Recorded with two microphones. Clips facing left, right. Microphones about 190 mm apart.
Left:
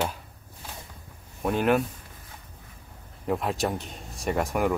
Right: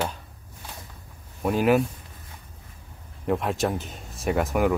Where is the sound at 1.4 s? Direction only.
5° right (ahead or behind).